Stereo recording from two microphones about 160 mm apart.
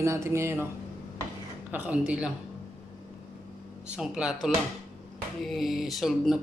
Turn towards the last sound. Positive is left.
turn(degrees=0)  # may be behind; listen again after turning